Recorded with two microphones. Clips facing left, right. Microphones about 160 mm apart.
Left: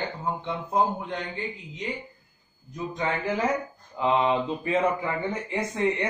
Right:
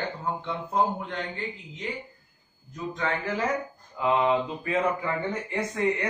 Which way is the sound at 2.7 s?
15° left (ahead or behind).